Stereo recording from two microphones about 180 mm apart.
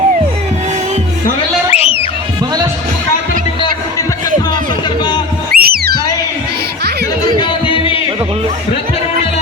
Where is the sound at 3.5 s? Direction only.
20° left (ahead or behind).